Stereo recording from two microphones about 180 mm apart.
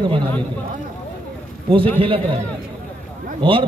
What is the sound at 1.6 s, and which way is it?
Speech, 30° right (ahead or behind).